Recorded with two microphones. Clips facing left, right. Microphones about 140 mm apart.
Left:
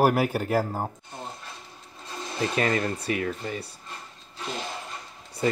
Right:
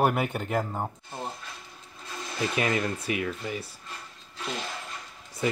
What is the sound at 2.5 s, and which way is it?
Speech, 5° right (ahead or behind).